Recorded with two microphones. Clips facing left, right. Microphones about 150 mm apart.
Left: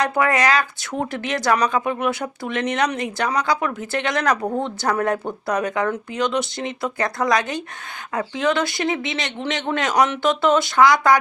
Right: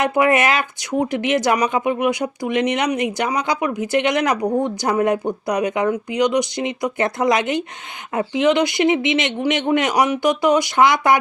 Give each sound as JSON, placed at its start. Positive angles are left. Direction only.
{"t": 0.0, "sound": "speech", "side_deg": -20}